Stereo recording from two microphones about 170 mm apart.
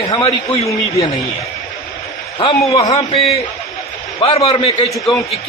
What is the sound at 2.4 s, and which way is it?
A man's voice, 30° left (ahead or behind).